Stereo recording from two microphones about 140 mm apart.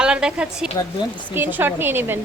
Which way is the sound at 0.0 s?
5° right (ahead or behind).